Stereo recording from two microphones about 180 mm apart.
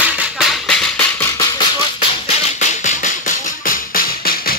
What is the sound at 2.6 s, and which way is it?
Music, 45° left (ahead or behind).